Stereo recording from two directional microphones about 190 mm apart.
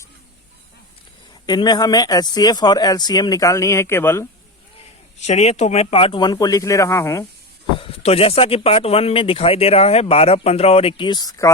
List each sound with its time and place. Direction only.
1.5 s speech: 20° left (ahead or behind)
5.2 s speech: 35° left (ahead or behind); by 7.3 s 15° left (ahead or behind)
7.8 s speech: 30° left (ahead or behind)